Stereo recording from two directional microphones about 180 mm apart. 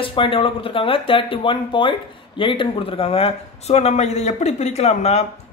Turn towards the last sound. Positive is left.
turn(degrees=35)  # may be behind; listen again after turning